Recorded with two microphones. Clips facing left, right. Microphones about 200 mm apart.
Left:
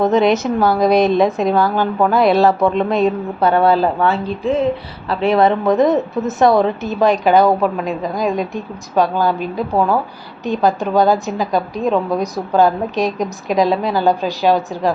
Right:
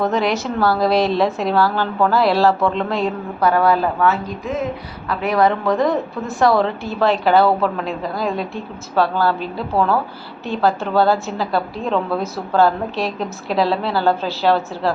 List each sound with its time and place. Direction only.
0.0 s a woman's voice: 20° left (ahead or behind)